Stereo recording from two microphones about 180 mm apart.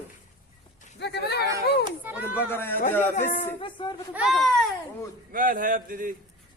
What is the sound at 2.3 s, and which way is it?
Speech, 10° left (ahead or behind).